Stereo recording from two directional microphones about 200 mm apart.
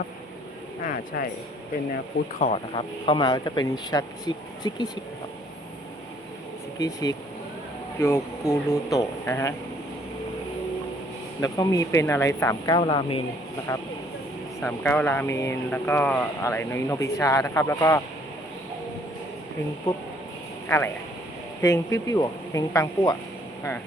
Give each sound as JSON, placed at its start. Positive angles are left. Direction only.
{"t": 0.8, "sound": "speech", "side_deg": 45}
{"t": 2.4, "sound": "speech", "side_deg": 30}
{"t": 6.7, "sound": "speech", "side_deg": 20}
{"t": 11.3, "sound": "speech", "side_deg": 15}
{"t": 14.6, "sound": "speech", "side_deg": 10}
{"t": 20.7, "sound": "speech", "side_deg": 10}